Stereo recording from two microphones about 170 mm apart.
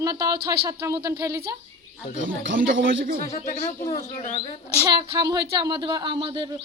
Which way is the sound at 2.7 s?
90° right.